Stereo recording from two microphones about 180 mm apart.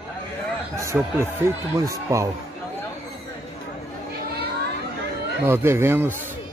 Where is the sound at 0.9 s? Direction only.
15° right (ahead or behind).